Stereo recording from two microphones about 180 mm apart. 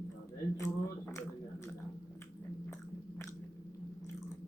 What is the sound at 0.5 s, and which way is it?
Speech, 15° left (ahead or behind).